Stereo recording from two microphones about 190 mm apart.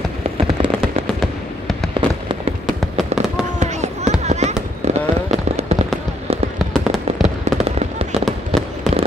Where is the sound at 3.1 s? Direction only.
35° right (ahead or behind).